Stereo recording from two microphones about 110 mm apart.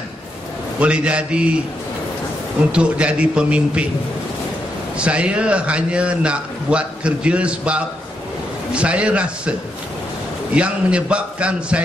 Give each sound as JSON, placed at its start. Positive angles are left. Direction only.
{"t": 0.7, "sound": "a man's voice", "side_deg": -10}
{"t": 2.7, "sound": "a man's voice", "side_deg": -10}
{"t": 4.9, "sound": "a man's voice", "side_deg": -10}